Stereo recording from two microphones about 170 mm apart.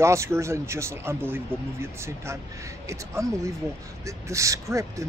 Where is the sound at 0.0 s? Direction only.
15° right (ahead or behind).